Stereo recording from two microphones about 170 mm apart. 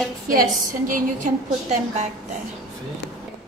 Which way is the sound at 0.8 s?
50° right (ahead or behind).